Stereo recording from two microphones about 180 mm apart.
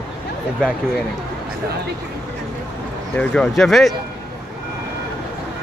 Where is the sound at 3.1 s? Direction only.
5° left (ahead or behind).